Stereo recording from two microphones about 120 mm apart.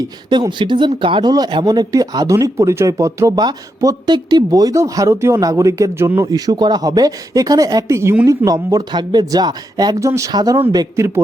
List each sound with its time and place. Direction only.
0.3 s speech: 40° right (ahead or behind); by 11.2 s 25° right (ahead or behind)